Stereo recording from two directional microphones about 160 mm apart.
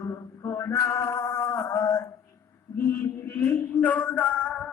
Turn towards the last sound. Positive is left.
turn(degrees=5)  # may be behind; listen again after turning